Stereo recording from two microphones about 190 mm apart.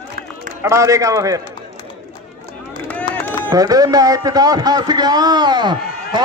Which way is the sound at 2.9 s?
10° left (ahead or behind).